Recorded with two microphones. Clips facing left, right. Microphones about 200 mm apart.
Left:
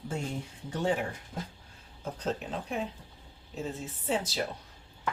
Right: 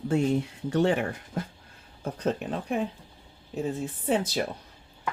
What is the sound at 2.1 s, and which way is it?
Speech, 55° right (ahead or behind).